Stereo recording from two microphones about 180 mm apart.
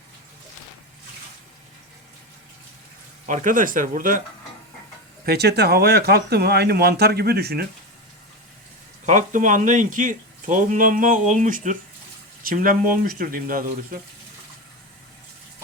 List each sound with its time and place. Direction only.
3.2 s speech: 45° right (ahead or behind)
5.2 s speech: 65° right (ahead or behind)
9.0 s speech: 45° right (ahead or behind)